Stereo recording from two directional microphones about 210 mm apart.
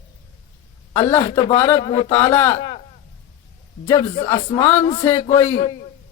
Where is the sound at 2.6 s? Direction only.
25° left (ahead or behind).